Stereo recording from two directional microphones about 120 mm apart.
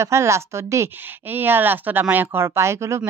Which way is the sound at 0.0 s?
25° right (ahead or behind).